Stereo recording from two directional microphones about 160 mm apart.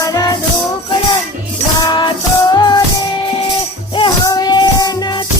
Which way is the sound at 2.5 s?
25° left (ahead or behind).